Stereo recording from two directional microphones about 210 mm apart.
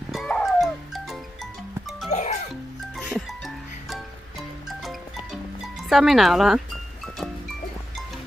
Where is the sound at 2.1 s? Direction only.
35° left (ahead or behind).